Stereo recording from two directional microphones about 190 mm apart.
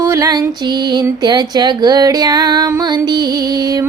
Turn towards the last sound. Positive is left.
turn(degrees=-20)  # may be behind; listen again after turning